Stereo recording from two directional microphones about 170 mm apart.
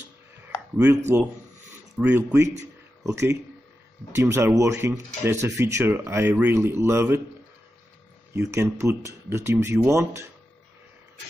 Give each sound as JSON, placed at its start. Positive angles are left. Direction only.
{"t": 0.7, "sound": "speech", "side_deg": -15}
{"t": 8.3, "sound": "speech", "side_deg": -15}